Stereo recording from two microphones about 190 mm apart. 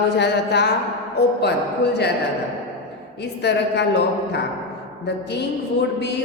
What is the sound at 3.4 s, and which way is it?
Speech, 65° left (ahead or behind).